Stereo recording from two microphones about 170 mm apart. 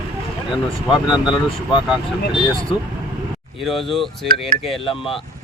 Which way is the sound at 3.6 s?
Centre (ahead or behind).